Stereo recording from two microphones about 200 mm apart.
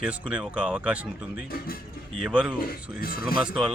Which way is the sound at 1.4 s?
45° left (ahead or behind).